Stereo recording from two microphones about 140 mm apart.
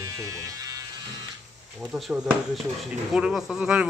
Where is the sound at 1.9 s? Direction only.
5° right (ahead or behind).